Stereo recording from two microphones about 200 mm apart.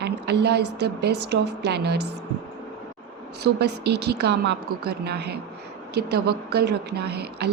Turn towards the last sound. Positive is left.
turn(degrees=-55)  # may be behind; listen again after turning